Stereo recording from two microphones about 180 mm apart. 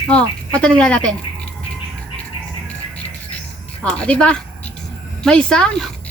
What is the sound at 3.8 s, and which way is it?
A woman's voice, 5° left (ahead or behind).